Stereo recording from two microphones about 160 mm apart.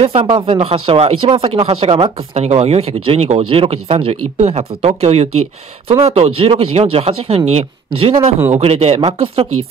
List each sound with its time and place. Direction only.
0.0 s speech: 35° right (ahead or behind)